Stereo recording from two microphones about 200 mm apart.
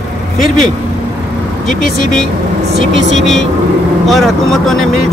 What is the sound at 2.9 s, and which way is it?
Speech, 65° right (ahead or behind).